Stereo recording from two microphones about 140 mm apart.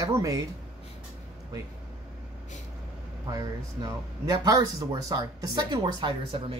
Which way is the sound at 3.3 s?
25° right (ahead or behind).